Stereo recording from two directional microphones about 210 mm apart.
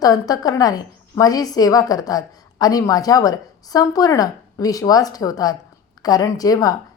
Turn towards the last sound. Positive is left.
turn(degrees=15)  # may be behind; listen again after turning